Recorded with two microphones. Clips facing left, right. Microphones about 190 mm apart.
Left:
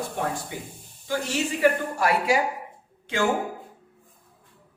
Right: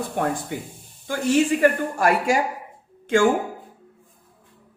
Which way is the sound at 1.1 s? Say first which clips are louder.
Right 7 dB; 50° right (ahead or behind).